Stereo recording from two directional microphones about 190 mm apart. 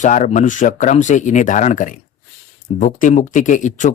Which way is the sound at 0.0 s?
40° left (ahead or behind).